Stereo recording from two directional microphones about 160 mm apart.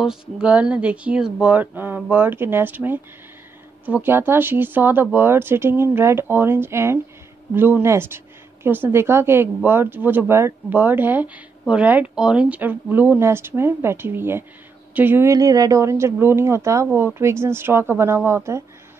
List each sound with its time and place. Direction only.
0.0 s speech: 5° right (ahead or behind)